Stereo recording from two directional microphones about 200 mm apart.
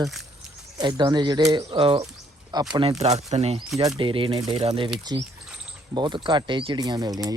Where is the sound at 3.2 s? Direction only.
35° right (ahead or behind).